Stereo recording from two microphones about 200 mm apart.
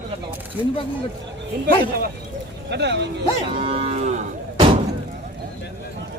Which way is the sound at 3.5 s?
30° right (ahead or behind).